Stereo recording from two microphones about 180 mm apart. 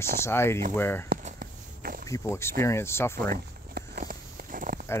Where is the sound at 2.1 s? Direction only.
15° left (ahead or behind).